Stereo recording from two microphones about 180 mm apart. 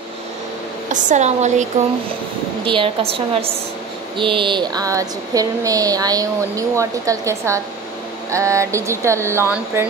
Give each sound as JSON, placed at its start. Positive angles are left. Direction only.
{"t": 0.9, "sound": "a woman's voice", "side_deg": -45}
{"t": 2.6, "sound": "a woman's voice", "side_deg": -30}